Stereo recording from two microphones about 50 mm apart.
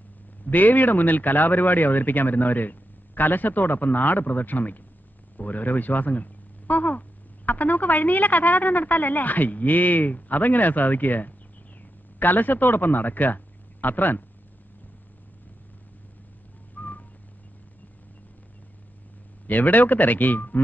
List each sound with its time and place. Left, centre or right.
0.5 s a man's voice: left
16.7 s whistling: left
19.4 s speech: left